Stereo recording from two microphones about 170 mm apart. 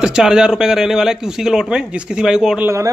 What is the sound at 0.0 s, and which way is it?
Speech, 5° right (ahead or behind).